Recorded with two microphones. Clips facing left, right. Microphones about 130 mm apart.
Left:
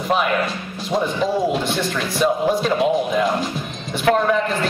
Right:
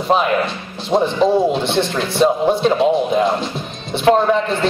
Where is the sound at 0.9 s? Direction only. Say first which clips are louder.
Right 6 dB; 25° right (ahead or behind).